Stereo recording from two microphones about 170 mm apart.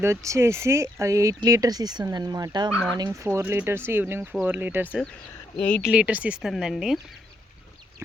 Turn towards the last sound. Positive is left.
turn(degrees=0)  # may be behind; listen again after turning